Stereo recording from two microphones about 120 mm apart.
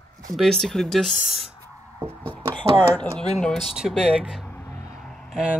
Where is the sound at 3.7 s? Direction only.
5° right (ahead or behind).